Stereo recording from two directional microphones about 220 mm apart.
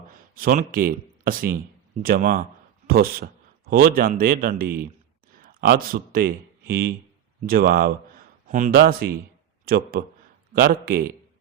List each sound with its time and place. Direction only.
0.1 s speech: 40° right (ahead or behind)